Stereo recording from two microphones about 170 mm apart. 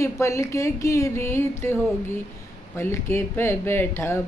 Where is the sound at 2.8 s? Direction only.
15° left (ahead or behind).